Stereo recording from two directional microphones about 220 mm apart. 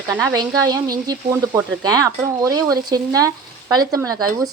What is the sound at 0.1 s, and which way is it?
A woman's voice, 10° right (ahead or behind).